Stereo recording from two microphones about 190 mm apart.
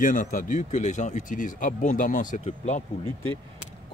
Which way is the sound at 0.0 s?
45° left (ahead or behind).